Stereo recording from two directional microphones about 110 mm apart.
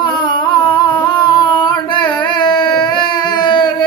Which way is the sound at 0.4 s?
45° left (ahead or behind).